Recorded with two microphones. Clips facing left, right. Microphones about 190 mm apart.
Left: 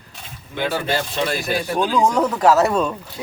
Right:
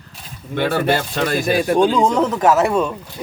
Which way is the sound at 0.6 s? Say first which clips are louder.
Right 4 dB; 60° right (ahead or behind).